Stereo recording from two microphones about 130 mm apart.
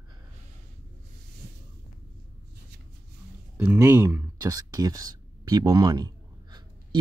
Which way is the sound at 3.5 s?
10° right (ahead or behind).